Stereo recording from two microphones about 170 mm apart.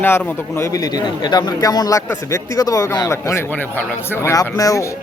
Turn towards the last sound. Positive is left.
turn(degrees=20)  # may be behind; listen again after turning